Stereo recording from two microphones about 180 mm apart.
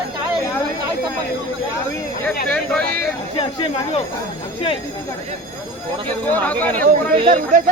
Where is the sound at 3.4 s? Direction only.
30° left (ahead or behind).